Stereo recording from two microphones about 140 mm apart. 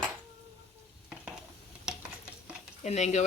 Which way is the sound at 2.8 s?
55° left (ahead or behind).